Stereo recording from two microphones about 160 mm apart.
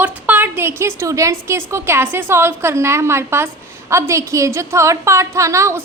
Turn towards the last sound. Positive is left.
turn(degrees=-20)  # may be behind; listen again after turning